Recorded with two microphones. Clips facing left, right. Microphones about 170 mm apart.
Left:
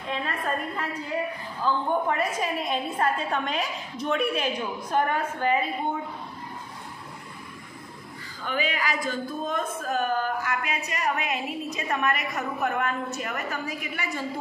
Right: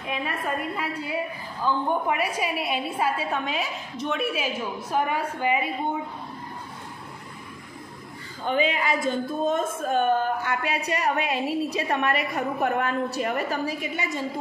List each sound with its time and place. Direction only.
0.1 s a woman's voice: 10° right (ahead or behind)
8.5 s a woman's voice: 30° right (ahead or behind)